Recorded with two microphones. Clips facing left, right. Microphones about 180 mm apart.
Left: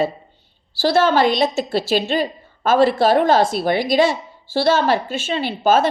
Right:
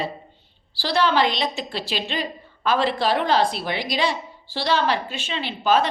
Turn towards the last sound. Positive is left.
turn(degrees=45)  # may be behind; listen again after turning